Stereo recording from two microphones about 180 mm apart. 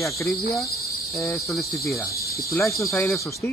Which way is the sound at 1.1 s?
15° left (ahead or behind).